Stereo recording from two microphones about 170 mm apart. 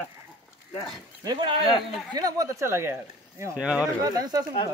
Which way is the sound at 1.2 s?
25° right (ahead or behind).